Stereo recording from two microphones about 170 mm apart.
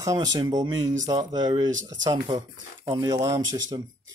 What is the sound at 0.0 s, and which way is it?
Speech, 20° right (ahead or behind).